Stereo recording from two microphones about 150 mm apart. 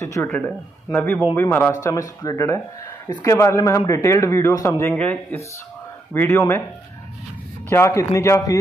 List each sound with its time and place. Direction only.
0.0 s a sound: 20° left (ahead or behind)
0.9 s a man's voice: 15° left (ahead or behind)
7.7 s a man's voice: 20° left (ahead or behind)